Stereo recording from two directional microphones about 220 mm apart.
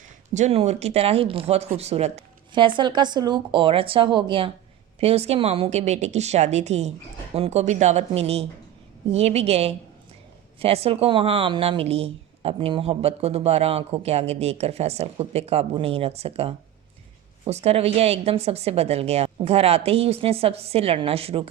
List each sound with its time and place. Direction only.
0.3 s speech: 30° right (ahead or behind)